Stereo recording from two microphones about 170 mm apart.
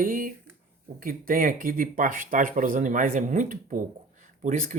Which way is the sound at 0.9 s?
55° right (ahead or behind).